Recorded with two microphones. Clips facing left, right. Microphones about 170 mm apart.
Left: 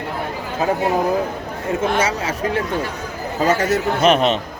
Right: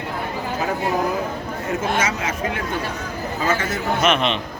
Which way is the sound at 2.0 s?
35° left (ahead or behind).